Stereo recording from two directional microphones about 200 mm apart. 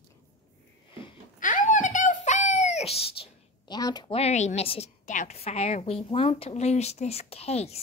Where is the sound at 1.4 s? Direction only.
40° left (ahead or behind).